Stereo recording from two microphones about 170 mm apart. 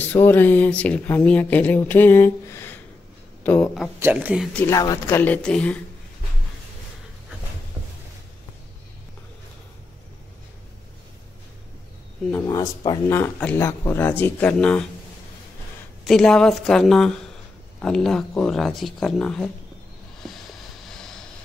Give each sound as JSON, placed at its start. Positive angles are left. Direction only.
{"t": 0.0, "sound": "speech", "side_deg": 10}
{"t": 4.0, "sound": "speech", "side_deg": -10}
{"t": 4.6, "sound": "speech", "side_deg": 20}
{"t": 12.4, "sound": "speech", "side_deg": 25}
{"t": 13.2, "sound": "speech", "side_deg": 10}
{"t": 16.1, "sound": "speech", "side_deg": 5}
{"t": 20.2, "sound": "a sound", "side_deg": 0}